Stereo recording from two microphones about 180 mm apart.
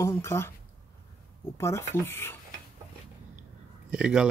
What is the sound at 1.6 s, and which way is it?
Speech, 15° left (ahead or behind).